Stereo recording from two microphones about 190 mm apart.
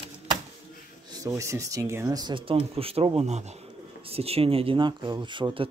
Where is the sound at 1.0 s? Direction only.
20° right (ahead or behind).